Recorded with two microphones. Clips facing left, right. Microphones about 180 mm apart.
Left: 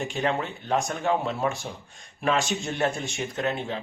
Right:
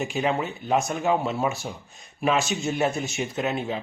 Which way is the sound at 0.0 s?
5° right (ahead or behind).